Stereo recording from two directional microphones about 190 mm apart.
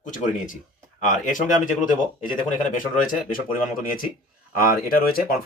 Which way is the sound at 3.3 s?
50° left (ahead or behind).